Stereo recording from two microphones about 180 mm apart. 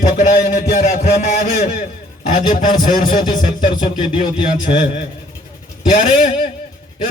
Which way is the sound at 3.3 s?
25° left (ahead or behind).